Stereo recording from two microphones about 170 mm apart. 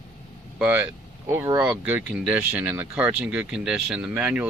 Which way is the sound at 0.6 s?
10° right (ahead or behind).